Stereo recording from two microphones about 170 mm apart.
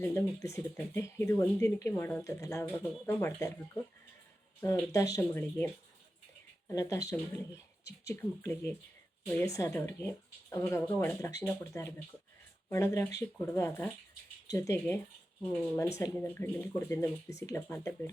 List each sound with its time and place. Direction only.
0.0 s speech: 15° left (ahead or behind)
4.6 s speech: 15° left (ahead or behind)
6.7 s speech: 20° left (ahead or behind)